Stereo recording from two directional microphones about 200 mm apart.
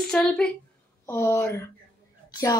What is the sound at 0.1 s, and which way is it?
A woman's voice, 5° left (ahead or behind).